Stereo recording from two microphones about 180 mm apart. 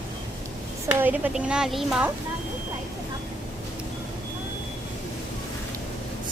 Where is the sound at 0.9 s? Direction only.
10° right (ahead or behind).